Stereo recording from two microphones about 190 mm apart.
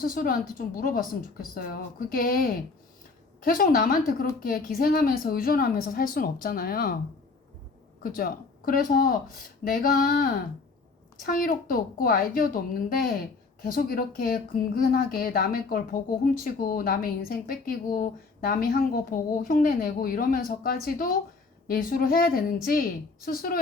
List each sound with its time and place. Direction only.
0.0 s speech: 50° left (ahead or behind)
8.0 s speech: 50° left (ahead or behind)